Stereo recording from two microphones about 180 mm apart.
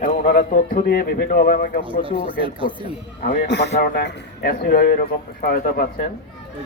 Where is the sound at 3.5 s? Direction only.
70° left (ahead or behind); by 6.1 s 55° left (ahead or behind).